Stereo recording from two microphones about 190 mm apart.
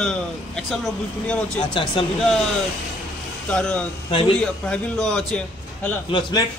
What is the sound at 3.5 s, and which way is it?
A man's voice, 5° left (ahead or behind).